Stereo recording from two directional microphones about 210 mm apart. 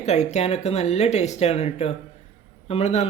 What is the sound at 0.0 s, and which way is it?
Speech, 35° left (ahead or behind).